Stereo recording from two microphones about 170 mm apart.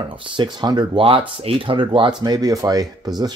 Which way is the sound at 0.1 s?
30° right (ahead or behind).